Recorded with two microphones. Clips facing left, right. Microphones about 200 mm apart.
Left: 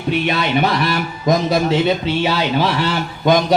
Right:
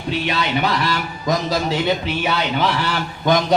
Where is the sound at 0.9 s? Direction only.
25° left (ahead or behind).